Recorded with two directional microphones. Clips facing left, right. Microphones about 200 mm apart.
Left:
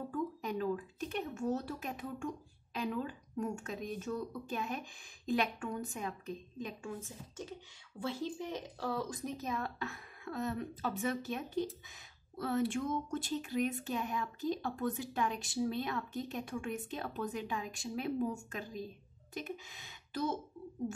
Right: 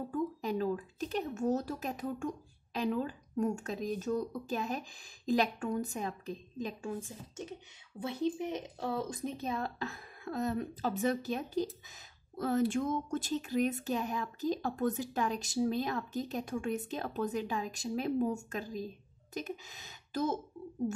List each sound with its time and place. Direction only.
0.1 s a woman's voice: 30° right (ahead or behind)
8.0 s a woman's voice: 20° right (ahead or behind); by 20.3 s 45° right (ahead or behind)